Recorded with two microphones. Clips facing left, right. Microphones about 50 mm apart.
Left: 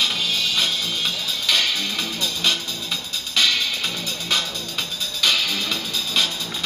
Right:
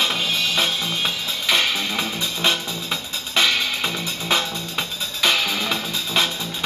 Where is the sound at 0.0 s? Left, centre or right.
Centre.